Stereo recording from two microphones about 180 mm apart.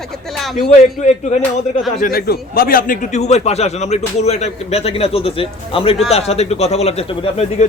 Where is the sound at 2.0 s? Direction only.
55° left (ahead or behind); by 7.6 s 35° left (ahead or behind).